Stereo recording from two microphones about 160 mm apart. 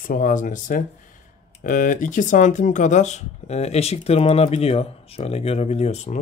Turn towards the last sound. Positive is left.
turn(degrees=45)  # may be behind; listen again after turning